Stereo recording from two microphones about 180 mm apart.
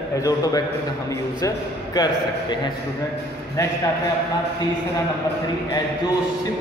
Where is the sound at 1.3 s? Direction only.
20° left (ahead or behind).